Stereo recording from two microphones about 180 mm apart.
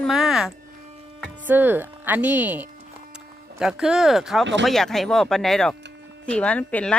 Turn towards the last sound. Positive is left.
turn(degrees=10)  # may be behind; listen again after turning